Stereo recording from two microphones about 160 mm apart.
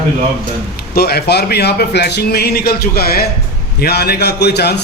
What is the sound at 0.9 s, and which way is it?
A man's voice, 80° left.